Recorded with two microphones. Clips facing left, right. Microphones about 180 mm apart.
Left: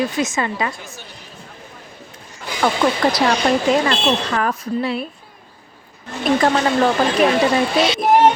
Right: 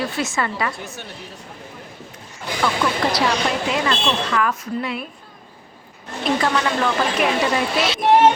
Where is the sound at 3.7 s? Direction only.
40° left (ahead or behind).